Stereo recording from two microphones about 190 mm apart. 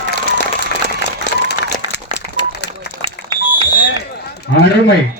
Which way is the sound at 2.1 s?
60° left (ahead or behind).